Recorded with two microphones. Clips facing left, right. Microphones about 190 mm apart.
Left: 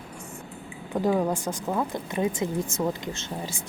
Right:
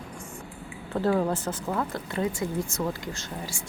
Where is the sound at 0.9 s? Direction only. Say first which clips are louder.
Left 1 dB; 15° left (ahead or behind).